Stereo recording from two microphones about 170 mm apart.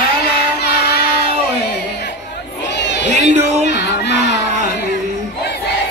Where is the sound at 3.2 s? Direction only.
45° right (ahead or behind).